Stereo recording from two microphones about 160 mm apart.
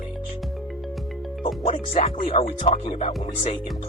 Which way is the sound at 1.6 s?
50° left (ahead or behind).